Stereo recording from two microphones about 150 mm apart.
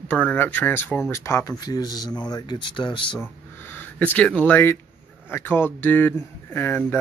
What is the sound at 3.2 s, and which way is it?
Speech, 15° left (ahead or behind).